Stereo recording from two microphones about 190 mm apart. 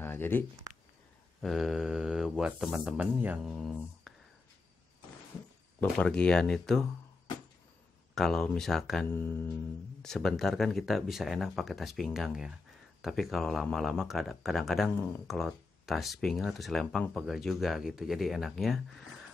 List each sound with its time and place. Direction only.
0.0 s a sound: 10° left (ahead or behind)
1.4 s speech: centre (ahead or behind)
5.8 s speech: 5° left (ahead or behind)
8.1 s speech: centre (ahead or behind)